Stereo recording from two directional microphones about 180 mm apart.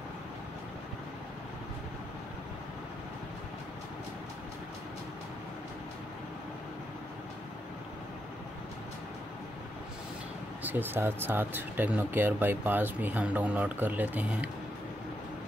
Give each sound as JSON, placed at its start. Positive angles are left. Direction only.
{"t": 10.6, "sound": "speech", "side_deg": -10}